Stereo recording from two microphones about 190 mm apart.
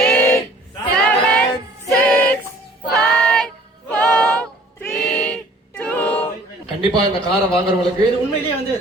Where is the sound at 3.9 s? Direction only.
5° left (ahead or behind).